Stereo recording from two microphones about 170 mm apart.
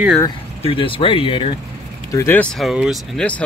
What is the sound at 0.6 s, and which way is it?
Speech, 35° left (ahead or behind).